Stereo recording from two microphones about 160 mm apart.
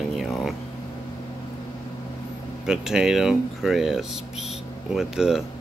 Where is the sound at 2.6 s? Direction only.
5° right (ahead or behind).